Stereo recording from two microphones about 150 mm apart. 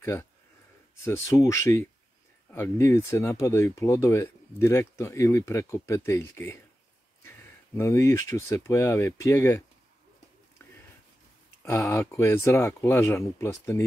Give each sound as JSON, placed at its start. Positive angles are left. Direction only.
{"t": 0.0, "sound": "speech", "side_deg": 20}
{"t": 11.6, "sound": "speech", "side_deg": 20}